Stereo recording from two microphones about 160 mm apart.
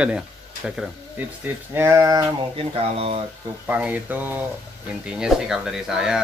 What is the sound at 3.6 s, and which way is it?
Speech, 10° right (ahead or behind).